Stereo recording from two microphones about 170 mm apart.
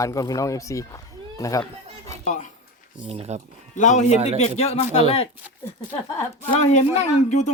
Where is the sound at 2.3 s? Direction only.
45° left (ahead or behind).